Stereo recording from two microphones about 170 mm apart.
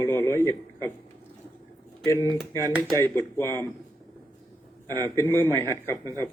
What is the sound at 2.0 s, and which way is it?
A man's voice, 15° left (ahead or behind).